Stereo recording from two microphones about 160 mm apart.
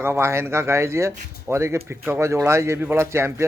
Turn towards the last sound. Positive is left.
turn(degrees=-15)  # may be behind; listen again after turning